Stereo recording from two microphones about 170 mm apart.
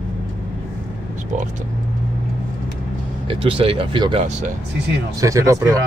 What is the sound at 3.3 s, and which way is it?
Speech, 30° right (ahead or behind).